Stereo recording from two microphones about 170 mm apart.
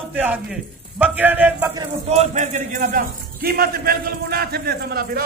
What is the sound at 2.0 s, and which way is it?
A man's voice, 40° right (ahead or behind).